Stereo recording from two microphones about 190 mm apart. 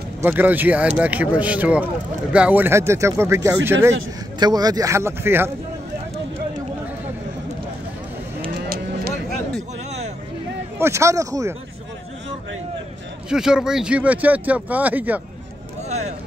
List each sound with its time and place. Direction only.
0.2 s speech: 10° right (ahead or behind)
8.6 s a sound: 55° right (ahead or behind)
10.8 s speech: 15° right (ahead or behind)
13.3 s speech: 5° right (ahead or behind)